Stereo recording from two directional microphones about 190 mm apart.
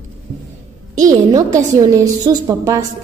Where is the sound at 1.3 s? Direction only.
15° right (ahead or behind).